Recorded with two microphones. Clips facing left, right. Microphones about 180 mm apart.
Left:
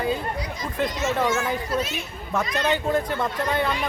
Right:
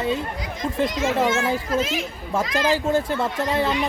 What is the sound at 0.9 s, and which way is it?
Speech, 90° right.